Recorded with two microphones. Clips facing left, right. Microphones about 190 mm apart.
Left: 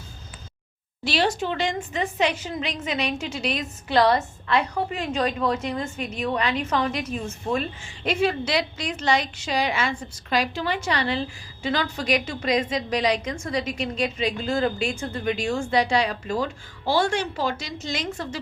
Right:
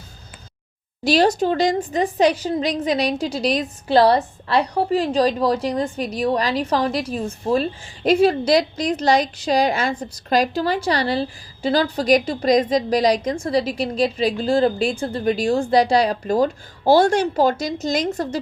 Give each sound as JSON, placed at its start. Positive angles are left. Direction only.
{"t": 1.0, "sound": "a woman's voice", "side_deg": -40}